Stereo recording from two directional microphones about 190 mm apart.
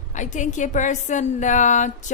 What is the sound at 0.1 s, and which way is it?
A woman's voice, 40° left (ahead or behind).